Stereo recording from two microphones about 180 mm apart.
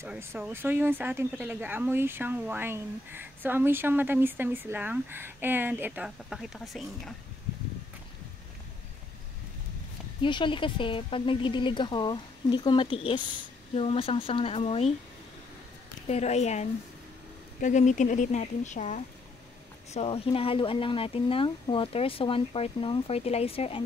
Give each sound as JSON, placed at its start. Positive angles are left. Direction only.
{"t": 0.0, "sound": "speech", "side_deg": -15}
{"t": 10.2, "sound": "a woman's voice", "side_deg": 25}
{"t": 16.1, "sound": "a woman's voice", "side_deg": 40}
{"t": 19.9, "sound": "speech", "side_deg": 30}